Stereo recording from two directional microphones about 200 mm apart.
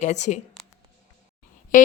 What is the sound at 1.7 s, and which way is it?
Speech, 40° left (ahead or behind).